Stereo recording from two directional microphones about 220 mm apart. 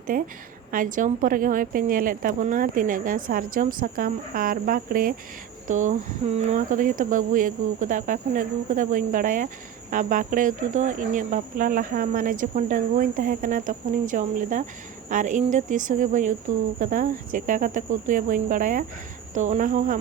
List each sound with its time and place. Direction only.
0.1 s speech: 40° right (ahead or behind)